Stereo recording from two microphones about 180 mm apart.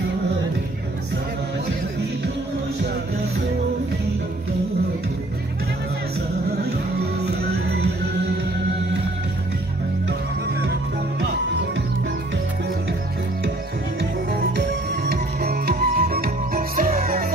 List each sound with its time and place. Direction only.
6.6 s music: 65° right (ahead or behind)
14.5 s music: 70° right (ahead or behind); by 17.3 s 55° right (ahead or behind)